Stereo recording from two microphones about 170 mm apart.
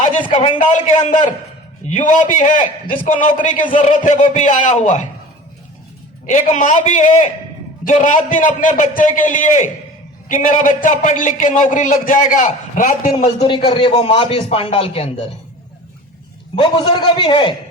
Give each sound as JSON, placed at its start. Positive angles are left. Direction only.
{"t": 0.3, "sound": "a man's voice", "side_deg": 45}
{"t": 6.3, "sound": "a man's voice", "side_deg": 45}
{"t": 13.2, "sound": "speech", "side_deg": 30}
{"t": 16.6, "sound": "a man's voice", "side_deg": 25}